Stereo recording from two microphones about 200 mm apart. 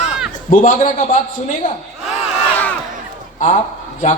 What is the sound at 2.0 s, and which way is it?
Crowd, centre (ahead or behind).